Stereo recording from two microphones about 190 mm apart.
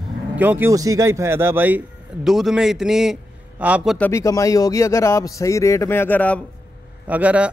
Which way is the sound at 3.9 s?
10° left (ahead or behind).